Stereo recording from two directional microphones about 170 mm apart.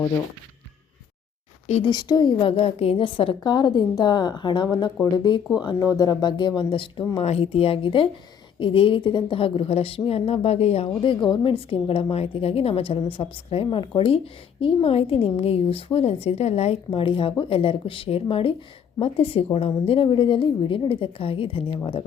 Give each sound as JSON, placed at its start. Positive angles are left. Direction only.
{"t": 1.6, "sound": "speech", "side_deg": 40}
{"t": 1.9, "sound": "a woman's voice", "side_deg": 25}